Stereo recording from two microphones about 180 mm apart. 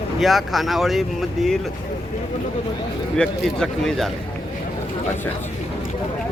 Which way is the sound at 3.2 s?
Centre (ahead or behind).